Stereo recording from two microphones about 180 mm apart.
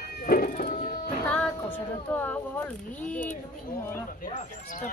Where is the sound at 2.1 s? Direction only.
10° left (ahead or behind).